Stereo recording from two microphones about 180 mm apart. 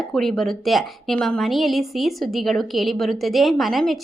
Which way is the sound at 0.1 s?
Centre (ahead or behind).